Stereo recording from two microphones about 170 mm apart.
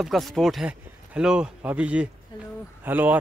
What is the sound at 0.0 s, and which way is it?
Speech, centre (ahead or behind).